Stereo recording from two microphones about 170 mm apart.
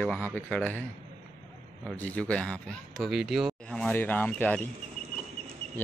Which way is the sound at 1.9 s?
10° left (ahead or behind).